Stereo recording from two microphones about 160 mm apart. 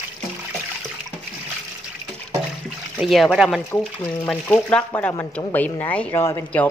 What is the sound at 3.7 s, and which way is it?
Speech, 10° left (ahead or behind).